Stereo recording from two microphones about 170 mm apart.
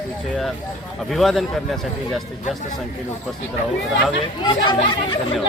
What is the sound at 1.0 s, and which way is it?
Speech, centre (ahead or behind).